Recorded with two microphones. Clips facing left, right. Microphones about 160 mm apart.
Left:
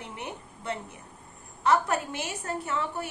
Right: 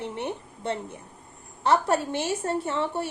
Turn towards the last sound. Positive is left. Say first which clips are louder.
# right 4 dB
turn(degrees=-30)  # may be behind; listen again after turning